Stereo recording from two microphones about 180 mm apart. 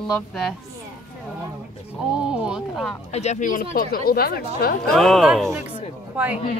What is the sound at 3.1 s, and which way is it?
Speech, 40° left (ahead or behind).